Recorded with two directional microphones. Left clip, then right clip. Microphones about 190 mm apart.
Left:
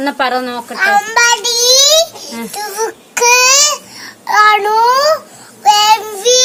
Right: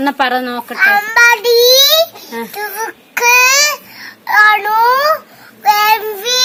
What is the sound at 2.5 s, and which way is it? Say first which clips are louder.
Babbling: left 4 dB; 5° left (ahead or behind).